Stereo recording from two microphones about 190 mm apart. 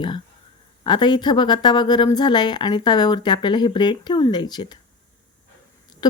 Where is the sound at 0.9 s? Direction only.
25° left (ahead or behind).